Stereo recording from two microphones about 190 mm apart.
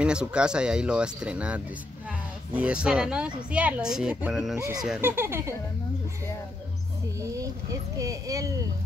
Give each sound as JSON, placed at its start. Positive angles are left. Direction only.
{"t": 0.0, "sound": "speech", "side_deg": -5}
{"t": 4.6, "sound": "speech", "side_deg": -15}
{"t": 7.2, "sound": "speech", "side_deg": -15}